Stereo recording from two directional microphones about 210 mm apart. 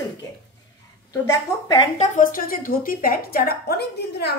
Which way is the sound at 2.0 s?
40° left (ahead or behind).